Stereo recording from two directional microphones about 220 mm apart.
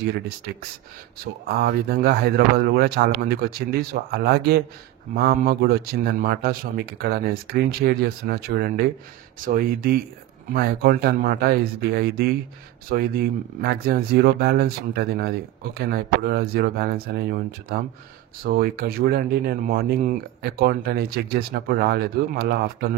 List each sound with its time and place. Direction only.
1.2 s speech: 45° right (ahead or behind)